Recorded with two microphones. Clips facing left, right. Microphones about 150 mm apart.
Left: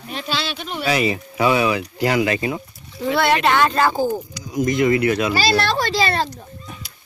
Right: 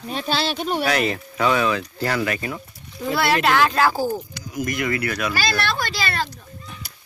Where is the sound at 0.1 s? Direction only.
35° right (ahead or behind).